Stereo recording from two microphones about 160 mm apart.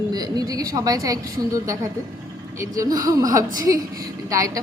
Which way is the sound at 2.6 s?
20° right (ahead or behind).